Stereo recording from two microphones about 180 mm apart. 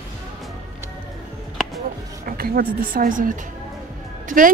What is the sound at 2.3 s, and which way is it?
Speech, 55° right (ahead or behind).